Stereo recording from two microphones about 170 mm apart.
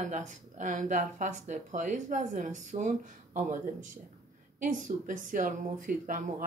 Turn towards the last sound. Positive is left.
turn(degrees=-50)  # may be behind; listen again after turning